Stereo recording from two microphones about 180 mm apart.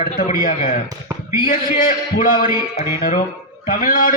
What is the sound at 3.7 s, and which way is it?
Speech, 50° left (ahead or behind).